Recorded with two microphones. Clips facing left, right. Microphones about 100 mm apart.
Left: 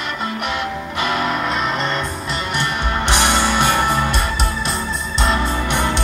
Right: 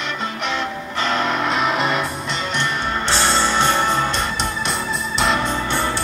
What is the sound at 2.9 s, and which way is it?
Music, 15° left (ahead or behind).